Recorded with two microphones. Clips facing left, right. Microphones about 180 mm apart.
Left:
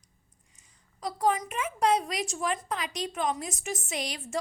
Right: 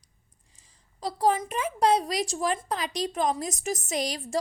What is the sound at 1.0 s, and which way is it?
A woman's voice, 30° right (ahead or behind).